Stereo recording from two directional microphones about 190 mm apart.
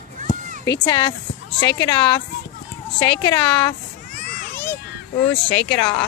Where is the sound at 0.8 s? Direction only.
25° left (ahead or behind).